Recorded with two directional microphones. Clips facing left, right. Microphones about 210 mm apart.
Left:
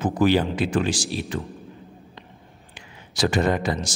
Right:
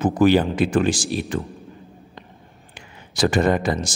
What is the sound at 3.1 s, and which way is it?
Speech, 50° right (ahead or behind).